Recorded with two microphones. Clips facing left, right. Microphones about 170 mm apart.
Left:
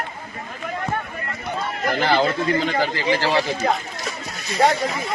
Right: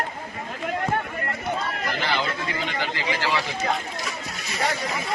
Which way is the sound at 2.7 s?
40° left (ahead or behind).